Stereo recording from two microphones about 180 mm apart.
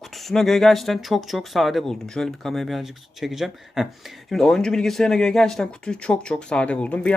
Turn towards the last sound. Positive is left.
turn(degrees=10)  # may be behind; listen again after turning